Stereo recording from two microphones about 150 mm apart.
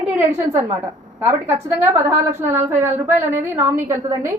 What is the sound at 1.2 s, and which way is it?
A woman's voice, 15° right (ahead or behind).